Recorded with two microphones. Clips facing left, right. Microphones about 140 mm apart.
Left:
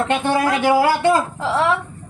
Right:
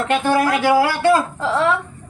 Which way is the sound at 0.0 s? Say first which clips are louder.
Right 1 dB; 25° left (ahead or behind).